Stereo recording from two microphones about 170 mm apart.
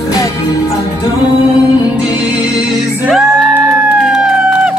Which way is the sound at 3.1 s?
5° right (ahead or behind).